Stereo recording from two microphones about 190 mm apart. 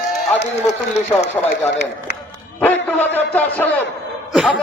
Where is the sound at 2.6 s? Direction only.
10° left (ahead or behind).